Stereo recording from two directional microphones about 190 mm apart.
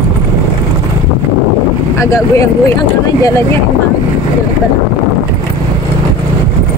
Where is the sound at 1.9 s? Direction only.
15° left (ahead or behind).